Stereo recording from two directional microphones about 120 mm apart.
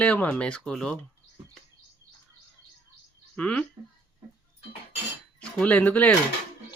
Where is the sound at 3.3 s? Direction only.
10° left (ahead or behind).